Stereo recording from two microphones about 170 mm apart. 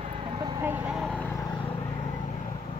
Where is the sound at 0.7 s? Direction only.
5° right (ahead or behind).